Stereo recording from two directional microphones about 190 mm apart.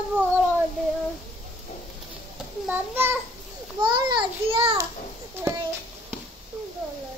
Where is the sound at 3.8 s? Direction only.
25° right (ahead or behind).